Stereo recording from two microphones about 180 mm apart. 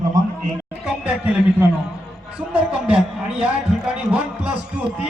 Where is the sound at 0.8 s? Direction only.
5° right (ahead or behind).